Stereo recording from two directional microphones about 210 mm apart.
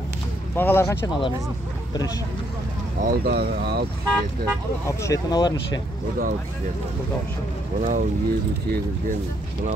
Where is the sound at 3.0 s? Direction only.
45° right (ahead or behind).